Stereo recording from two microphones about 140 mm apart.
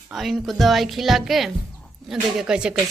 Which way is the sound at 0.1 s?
Centre (ahead or behind).